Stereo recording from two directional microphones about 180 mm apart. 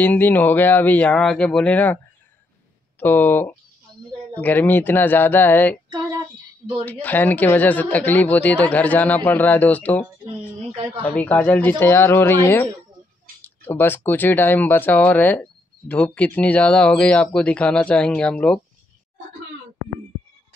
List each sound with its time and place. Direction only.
0.0 s speech: 10° left (ahead or behind)
3.0 s speech: 10° left (ahead or behind)
5.9 s female singing: 20° right (ahead or behind)
6.9 s speech: 10° left (ahead or behind)
10.3 s speech: 30° right (ahead or behind)
11.1 s speech: 10° left (ahead or behind)